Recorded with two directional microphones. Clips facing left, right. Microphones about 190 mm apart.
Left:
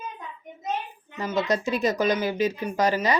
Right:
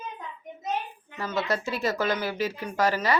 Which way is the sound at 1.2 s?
15° left (ahead or behind).